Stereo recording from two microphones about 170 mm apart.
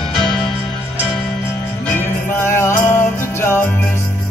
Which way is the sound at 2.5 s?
15° left (ahead or behind).